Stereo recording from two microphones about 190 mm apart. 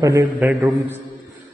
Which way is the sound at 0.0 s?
15° right (ahead or behind).